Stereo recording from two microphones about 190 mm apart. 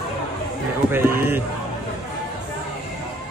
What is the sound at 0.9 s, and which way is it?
Speech, 10° right (ahead or behind).